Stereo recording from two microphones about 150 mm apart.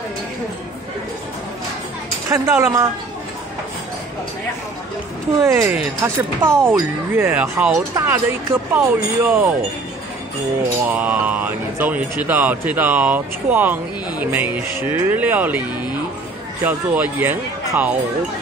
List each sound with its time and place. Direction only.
2.2 s speech: 15° right (ahead or behind)
5.4 s speech: 15° right (ahead or behind)
7.4 s speech: 5° right (ahead or behind)
7.9 s speech: 20° right (ahead or behind)
10.9 s speech: 10° right (ahead or behind)
16.6 s speech: 10° right (ahead or behind)